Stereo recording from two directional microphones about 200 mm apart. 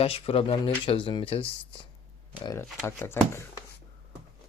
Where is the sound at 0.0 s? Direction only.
30° left (ahead or behind).